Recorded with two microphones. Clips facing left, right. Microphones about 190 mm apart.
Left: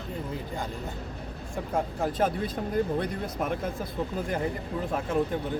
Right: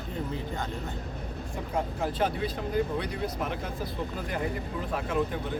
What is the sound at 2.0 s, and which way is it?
Speech, 45° left (ahead or behind).